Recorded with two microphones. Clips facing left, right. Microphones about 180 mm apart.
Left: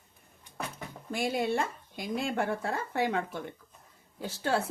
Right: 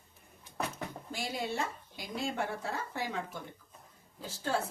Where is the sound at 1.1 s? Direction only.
55° left (ahead or behind).